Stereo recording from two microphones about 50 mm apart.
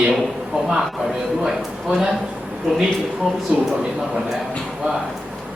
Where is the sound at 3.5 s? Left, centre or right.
Centre.